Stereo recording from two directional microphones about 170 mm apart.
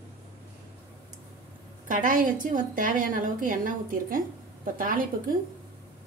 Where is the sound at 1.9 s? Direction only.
50° right (ahead or behind).